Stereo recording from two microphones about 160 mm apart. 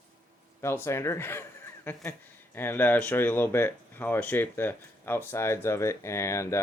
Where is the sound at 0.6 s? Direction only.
15° left (ahead or behind).